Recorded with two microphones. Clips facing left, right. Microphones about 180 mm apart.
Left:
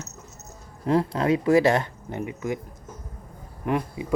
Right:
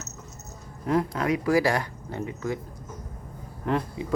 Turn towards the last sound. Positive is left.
turn(degrees=15)  # may be behind; listen again after turning